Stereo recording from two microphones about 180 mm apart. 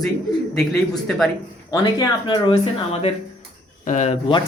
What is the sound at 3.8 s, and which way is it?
Speech, 40° left (ahead or behind).